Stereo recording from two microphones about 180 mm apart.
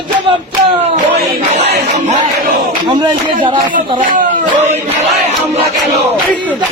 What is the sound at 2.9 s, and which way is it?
Speech, 25° right (ahead or behind).